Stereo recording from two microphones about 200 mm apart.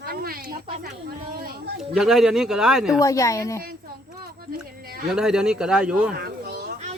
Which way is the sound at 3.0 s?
15° left (ahead or behind).